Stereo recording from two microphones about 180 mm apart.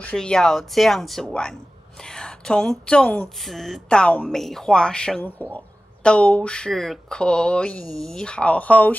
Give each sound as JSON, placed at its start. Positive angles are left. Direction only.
{"t": 0.0, "sound": "speech", "side_deg": 5}